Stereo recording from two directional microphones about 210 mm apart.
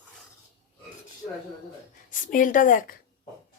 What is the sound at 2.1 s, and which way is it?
Speech, 40° left (ahead or behind).